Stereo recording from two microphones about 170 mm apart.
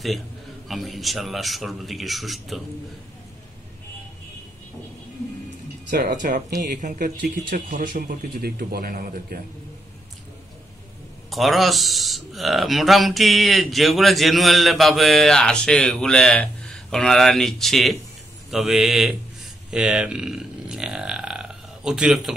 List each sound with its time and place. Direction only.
0.7 s speech: centre (ahead or behind)
5.9 s speech: 55° right (ahead or behind)
11.2 s speech: centre (ahead or behind)
19.7 s burping: 5° right (ahead or behind)